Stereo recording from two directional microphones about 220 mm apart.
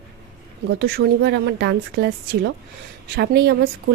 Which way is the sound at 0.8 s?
50° right (ahead or behind).